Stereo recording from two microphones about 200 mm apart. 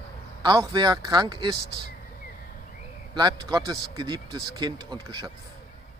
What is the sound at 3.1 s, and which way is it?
Speech, 20° right (ahead or behind).